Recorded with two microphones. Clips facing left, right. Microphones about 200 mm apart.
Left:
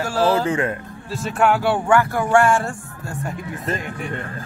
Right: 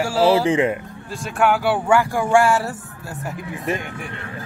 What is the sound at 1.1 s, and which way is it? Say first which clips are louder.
Speech: left 1 dB; centre (ahead or behind).